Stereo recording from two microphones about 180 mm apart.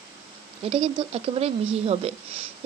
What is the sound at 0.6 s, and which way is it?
Speech, 30° right (ahead or behind).